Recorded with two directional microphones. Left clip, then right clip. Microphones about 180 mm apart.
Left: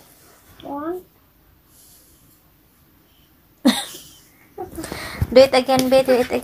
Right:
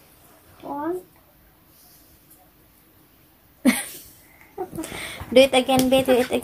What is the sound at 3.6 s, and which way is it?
Cough, 15° left (ahead or behind).